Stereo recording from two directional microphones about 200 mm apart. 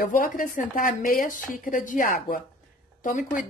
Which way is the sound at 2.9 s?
40° left (ahead or behind).